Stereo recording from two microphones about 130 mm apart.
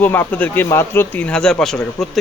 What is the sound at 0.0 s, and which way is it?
Speech, 15° left (ahead or behind).